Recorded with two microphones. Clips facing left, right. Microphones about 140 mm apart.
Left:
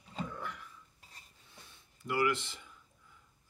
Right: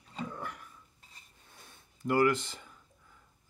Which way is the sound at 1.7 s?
45° right (ahead or behind).